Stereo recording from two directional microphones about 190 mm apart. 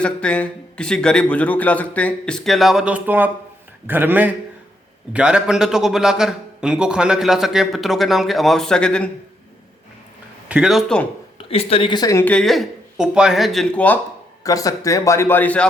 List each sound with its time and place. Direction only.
0.0 s a man's voice: 5° left (ahead or behind)
10.5 s a man's voice: centre (ahead or behind)
11.3 s a woman's voice: 30° left (ahead or behind); by 15.6 s 10° left (ahead or behind)